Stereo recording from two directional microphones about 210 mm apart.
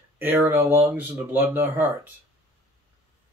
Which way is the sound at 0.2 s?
10° right (ahead or behind).